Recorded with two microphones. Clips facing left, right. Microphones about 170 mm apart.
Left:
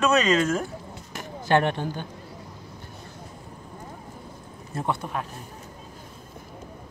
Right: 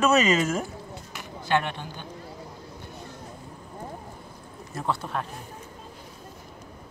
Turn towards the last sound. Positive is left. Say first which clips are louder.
# left 1 dB
turn(degrees=15)  # may be behind; listen again after turning